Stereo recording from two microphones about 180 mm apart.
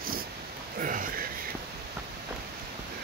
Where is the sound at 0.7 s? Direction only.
50° right (ahead or behind).